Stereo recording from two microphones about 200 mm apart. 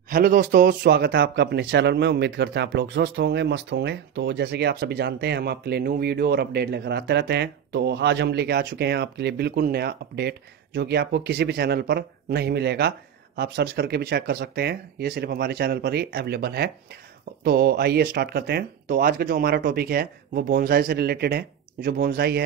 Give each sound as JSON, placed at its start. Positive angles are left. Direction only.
{"t": 0.1, "sound": "speech", "side_deg": -45}